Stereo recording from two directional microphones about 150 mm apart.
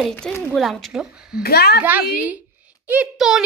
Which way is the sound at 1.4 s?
90° left.